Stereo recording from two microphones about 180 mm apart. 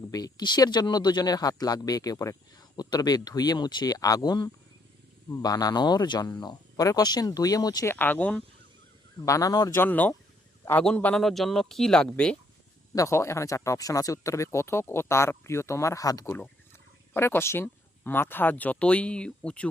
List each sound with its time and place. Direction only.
0.1 s speech: 20° left (ahead or behind)
9.2 s speech: 20° left (ahead or behind)
12.9 s speech: 15° left (ahead or behind)